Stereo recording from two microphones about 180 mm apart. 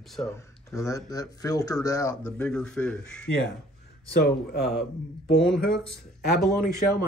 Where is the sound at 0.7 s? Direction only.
20° left (ahead or behind).